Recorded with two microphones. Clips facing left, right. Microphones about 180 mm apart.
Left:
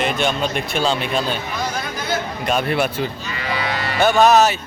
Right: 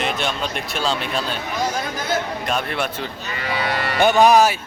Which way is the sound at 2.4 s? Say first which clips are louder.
Left 4 dB; 5° left (ahead or behind).